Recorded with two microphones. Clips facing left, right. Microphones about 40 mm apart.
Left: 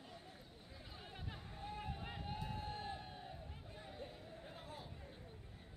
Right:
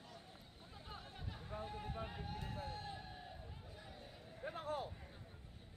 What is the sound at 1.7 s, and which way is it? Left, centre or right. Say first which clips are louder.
Vehicle: left 1 dB; left.